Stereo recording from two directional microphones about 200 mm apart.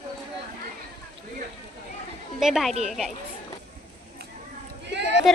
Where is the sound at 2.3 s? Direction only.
Centre (ahead or behind).